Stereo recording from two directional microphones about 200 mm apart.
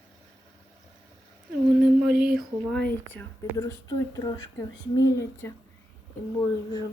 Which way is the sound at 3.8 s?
20° left (ahead or behind).